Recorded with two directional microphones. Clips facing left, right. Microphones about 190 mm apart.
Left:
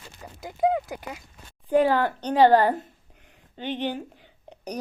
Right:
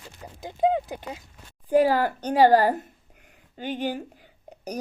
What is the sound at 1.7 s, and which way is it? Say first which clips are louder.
A woman's voice: right 1 dB; 5° right (ahead or behind).